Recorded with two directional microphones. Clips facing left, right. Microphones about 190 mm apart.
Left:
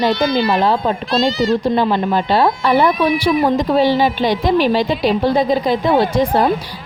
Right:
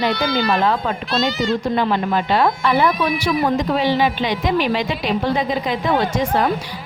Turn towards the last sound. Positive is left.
turn(degrees=35)  # may be behind; listen again after turning